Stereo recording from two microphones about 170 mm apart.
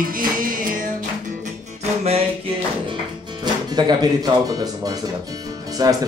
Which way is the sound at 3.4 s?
25° right (ahead or behind).